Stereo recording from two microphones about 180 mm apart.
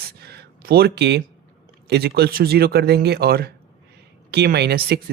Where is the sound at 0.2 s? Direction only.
65° right (ahead or behind).